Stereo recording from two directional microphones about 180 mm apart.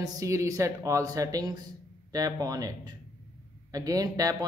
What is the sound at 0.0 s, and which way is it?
Speech, 20° right (ahead or behind).